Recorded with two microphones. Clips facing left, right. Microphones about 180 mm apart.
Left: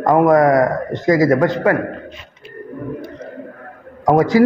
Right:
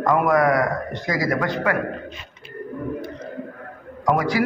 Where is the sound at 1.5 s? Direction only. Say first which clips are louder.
Left 6 dB; 25° left (ahead or behind).